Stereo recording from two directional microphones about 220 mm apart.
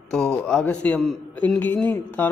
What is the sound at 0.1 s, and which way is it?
A man's voice, 5° left (ahead or behind).